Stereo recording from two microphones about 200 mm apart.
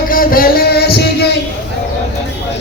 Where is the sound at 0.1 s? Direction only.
45° left (ahead or behind).